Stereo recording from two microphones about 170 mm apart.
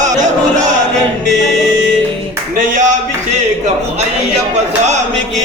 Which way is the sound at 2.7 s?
50° right (ahead or behind).